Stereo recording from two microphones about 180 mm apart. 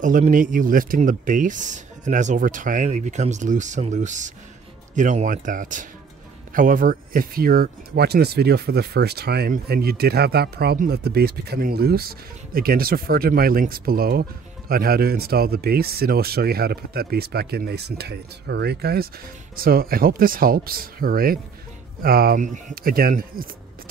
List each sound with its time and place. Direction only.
0.0 s speech: 45° right (ahead or behind)